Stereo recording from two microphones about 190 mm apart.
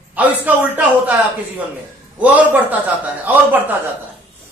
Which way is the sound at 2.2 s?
10° right (ahead or behind).